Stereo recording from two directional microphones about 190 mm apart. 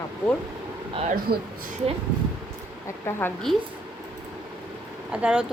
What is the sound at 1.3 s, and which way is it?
Speech, 55° right (ahead or behind).